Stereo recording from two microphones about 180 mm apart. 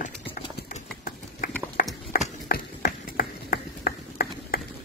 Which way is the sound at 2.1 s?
55° left (ahead or behind).